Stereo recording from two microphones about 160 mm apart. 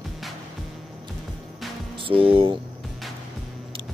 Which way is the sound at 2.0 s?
35° right (ahead or behind).